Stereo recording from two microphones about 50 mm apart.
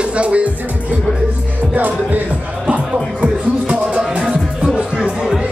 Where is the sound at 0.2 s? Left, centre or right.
Right.